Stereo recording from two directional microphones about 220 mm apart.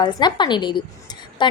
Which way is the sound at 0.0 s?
20° left (ahead or behind).